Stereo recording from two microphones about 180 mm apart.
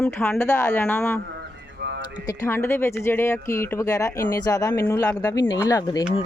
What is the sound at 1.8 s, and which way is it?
Typing, 70° right (ahead or behind).